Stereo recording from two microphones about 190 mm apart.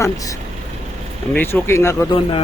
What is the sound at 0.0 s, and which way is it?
Speech, 20° left (ahead or behind).